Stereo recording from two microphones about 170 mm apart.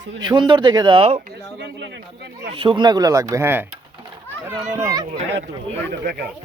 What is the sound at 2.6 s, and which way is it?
Speech, 30° right (ahead or behind).